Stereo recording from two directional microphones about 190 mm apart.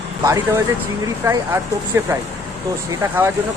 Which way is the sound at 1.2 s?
15° right (ahead or behind).